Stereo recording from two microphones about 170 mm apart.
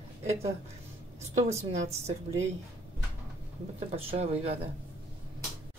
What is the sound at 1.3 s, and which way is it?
Speech, 40° right (ahead or behind).